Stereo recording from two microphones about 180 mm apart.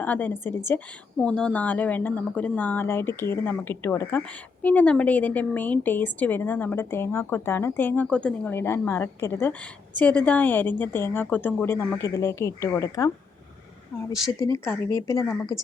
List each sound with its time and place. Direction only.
0.0 s speech: 10° left (ahead or behind)
14.3 s speech: 15° left (ahead or behind)